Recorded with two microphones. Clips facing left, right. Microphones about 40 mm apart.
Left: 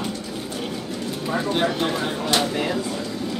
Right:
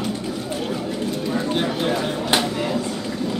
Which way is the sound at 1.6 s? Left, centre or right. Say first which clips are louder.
Left 1 dB; centre.